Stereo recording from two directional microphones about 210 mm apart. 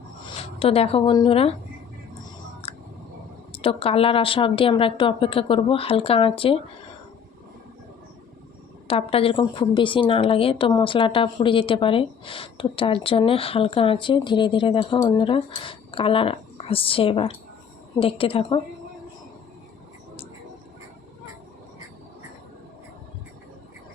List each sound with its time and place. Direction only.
0.3 s speech: 25° left (ahead or behind)
2.7 s a sound: 25° left (ahead or behind)
3.5 s a woman's voice: 25° left (ahead or behind)
8.9 s a woman's voice: 25° left (ahead or behind)